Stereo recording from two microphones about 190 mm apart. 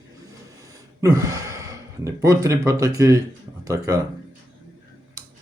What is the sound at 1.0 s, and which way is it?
Speech, 15° right (ahead or behind).